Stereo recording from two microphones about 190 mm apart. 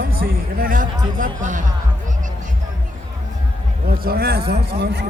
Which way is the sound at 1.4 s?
40° right (ahead or behind).